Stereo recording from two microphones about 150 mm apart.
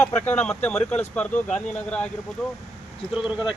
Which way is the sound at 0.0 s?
10° left (ahead or behind).